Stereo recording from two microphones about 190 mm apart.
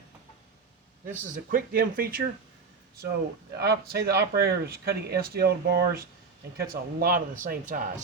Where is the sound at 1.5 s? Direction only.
50° right (ahead or behind).